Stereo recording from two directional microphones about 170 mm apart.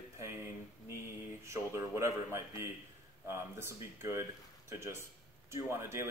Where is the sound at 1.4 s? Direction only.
15° right (ahead or behind).